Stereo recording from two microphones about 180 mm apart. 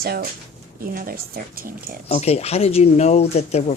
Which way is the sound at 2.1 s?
35° left (ahead or behind).